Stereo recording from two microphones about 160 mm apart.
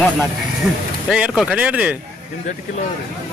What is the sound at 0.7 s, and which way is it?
A man's voice, 5° right (ahead or behind).